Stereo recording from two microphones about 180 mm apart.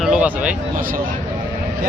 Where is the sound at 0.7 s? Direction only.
50° right (ahead or behind).